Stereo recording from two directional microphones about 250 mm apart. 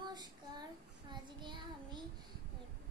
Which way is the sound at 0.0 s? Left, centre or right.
Centre.